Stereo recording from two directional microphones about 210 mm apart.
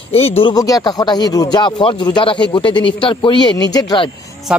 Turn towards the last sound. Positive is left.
turn(degrees=20)  # may be behind; listen again after turning